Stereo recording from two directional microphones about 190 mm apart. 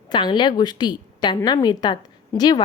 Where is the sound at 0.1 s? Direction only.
25° left (ahead or behind).